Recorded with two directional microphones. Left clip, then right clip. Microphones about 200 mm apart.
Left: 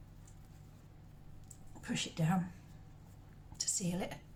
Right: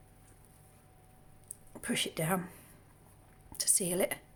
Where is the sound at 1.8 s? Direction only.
50° right (ahead or behind).